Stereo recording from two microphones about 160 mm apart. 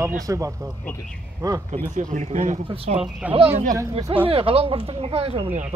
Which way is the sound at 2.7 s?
35° right (ahead or behind).